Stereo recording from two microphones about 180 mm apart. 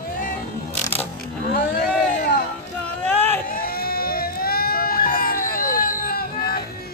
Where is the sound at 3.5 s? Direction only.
55° left (ahead or behind).